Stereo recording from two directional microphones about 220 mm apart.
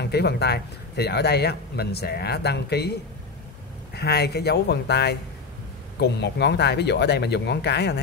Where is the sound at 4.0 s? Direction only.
45° left (ahead or behind).